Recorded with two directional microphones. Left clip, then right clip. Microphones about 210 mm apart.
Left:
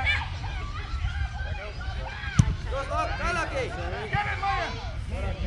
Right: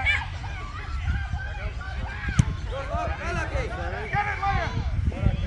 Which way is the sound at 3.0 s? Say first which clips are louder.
Left 3 dB; 30° left (ahead or behind).